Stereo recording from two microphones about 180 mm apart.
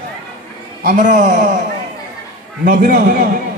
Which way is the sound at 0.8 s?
50° right (ahead or behind).